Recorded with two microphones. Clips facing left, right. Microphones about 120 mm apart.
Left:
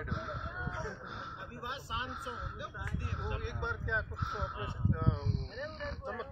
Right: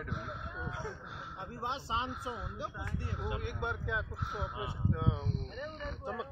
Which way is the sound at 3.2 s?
10° right (ahead or behind).